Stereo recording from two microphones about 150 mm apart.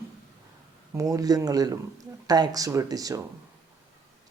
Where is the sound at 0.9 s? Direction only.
20° right (ahead or behind).